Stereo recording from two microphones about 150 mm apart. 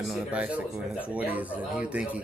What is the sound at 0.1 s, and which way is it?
Speech, 10° right (ahead or behind).